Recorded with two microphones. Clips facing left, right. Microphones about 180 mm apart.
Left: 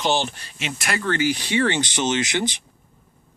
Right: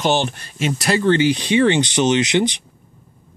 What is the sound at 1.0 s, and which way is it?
Speech, 25° right (ahead or behind).